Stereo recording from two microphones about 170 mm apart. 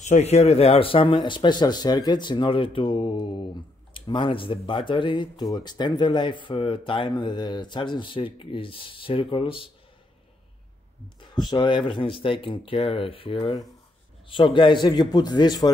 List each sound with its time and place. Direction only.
0.0 s speech: 40° left (ahead or behind)
11.1 s speech: 25° left (ahead or behind)